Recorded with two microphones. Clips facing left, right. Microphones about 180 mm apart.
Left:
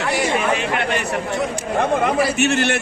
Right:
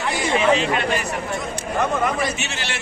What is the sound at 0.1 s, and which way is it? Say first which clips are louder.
A man's voice: right 2 dB; 55° left (ahead or behind).